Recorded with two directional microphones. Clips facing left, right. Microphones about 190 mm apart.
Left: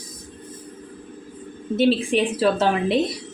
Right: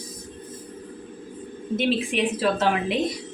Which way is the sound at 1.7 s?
30° left (ahead or behind).